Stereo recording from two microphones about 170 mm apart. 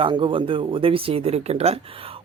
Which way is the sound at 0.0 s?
30° right (ahead or behind).